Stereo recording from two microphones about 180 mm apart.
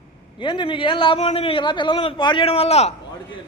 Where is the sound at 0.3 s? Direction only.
25° left (ahead or behind).